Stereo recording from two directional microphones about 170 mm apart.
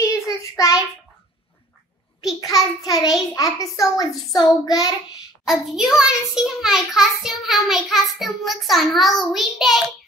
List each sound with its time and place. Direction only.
0.0 s child singing: 20° left (ahead or behind)
2.4 s a child's voice: 20° left (ahead or behind)
5.4 s a child's voice: centre (ahead or behind)